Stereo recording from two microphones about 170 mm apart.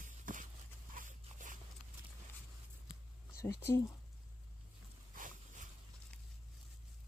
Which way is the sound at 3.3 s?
15° left (ahead or behind).